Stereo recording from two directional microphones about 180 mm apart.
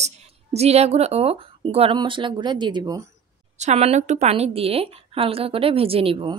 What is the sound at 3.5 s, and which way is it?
A woman's voice, 35° right (ahead or behind).